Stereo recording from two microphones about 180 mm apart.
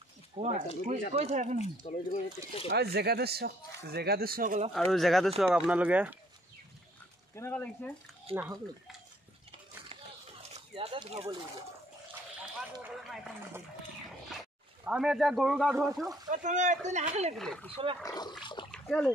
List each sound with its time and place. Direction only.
0.4 s speech: 40° right (ahead or behind)
1.6 s speech: 45° left (ahead or behind)
2.7 s speech: 65° right (ahead or behind)
4.7 s a man's voice: centre (ahead or behind)
7.3 s speech: 10° left (ahead or behind)
8.3 s speech: 30° right (ahead or behind)
10.5 s speech: 30° right (ahead or behind)
12.5 s a sound: centre (ahead or behind)
14.9 s a man's voice: 5° right (ahead or behind)
16.3 s speech: 45° right (ahead or behind)
17.4 s a man's voice: 5° left (ahead or behind)
18.0 s speech: 20° left (ahead or behind)
18.7 s splash: 5° left (ahead or behind)